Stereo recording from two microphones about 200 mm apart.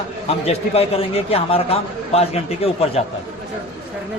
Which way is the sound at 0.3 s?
30° left (ahead or behind).